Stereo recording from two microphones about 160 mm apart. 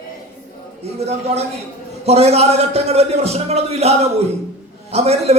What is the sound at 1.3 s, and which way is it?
A man's voice, 40° right (ahead or behind).